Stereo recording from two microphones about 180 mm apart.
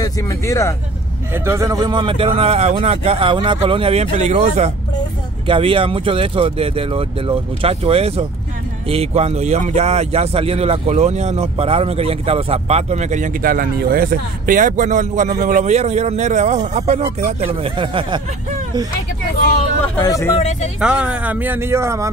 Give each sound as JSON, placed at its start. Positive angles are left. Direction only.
{"t": 0.0, "sound": "speech", "side_deg": 15}
{"t": 1.3, "sound": "speech", "side_deg": -15}
{"t": 20.0, "sound": "speech", "side_deg": 15}
{"t": 20.3, "sound": "speech", "side_deg": 40}
{"t": 20.8, "sound": "speech", "side_deg": -5}